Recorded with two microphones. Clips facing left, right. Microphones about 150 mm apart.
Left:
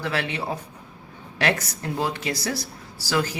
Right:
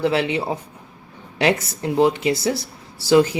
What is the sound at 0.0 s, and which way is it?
Speech, 25° right (ahead or behind).